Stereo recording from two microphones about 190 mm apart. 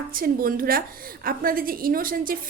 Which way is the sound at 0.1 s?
50° right (ahead or behind).